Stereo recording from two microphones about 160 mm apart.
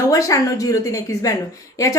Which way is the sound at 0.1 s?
20° left (ahead or behind).